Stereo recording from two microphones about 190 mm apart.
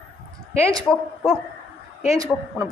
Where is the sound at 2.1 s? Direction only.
15° right (ahead or behind).